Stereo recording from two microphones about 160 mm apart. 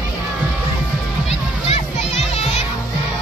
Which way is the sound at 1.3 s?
40° left (ahead or behind).